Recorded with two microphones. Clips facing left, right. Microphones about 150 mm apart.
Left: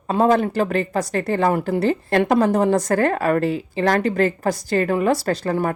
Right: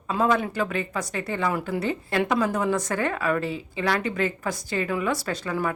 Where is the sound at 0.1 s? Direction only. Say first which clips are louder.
Left 6 dB; 45° left (ahead or behind).